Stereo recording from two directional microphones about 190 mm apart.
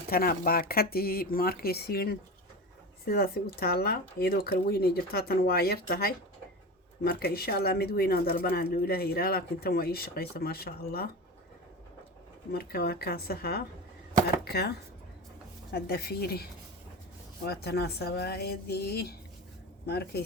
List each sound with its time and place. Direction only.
0.1 s speech: 50° left (ahead or behind)
12.5 s speech: 55° left (ahead or behind)